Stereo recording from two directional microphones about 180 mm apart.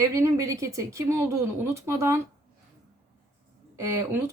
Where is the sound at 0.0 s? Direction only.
15° right (ahead or behind).